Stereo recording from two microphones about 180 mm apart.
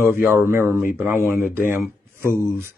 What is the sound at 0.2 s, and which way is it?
Speech, 15° right (ahead or behind).